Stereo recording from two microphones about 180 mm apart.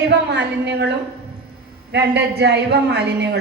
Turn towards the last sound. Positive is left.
turn(degrees=-70)  # may be behind; listen again after turning